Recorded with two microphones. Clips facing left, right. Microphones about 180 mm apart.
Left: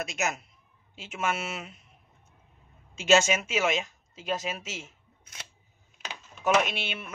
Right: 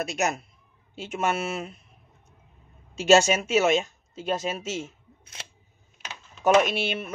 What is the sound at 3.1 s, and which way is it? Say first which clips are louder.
Speech: right 4 dB; 35° right (ahead or behind).